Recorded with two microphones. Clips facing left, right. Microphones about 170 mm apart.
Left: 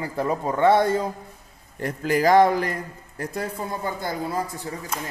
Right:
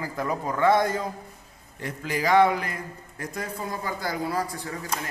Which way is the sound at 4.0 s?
20° left (ahead or behind).